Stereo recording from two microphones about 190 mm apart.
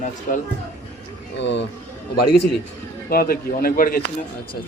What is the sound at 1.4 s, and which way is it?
Speech, 70° left (ahead or behind).